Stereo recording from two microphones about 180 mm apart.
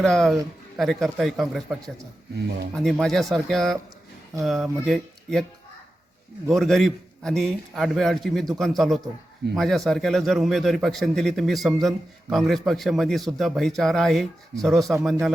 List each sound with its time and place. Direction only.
0.0 s a man's voice: 5° left (ahead or behind)
6.5 s a man's voice: centre (ahead or behind)